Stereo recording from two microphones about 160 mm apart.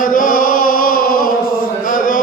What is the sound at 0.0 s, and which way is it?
Chant, 55° left (ahead or behind).